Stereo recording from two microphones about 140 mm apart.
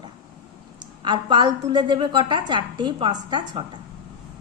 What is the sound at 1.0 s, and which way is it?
A woman's voice, 35° right (ahead or behind).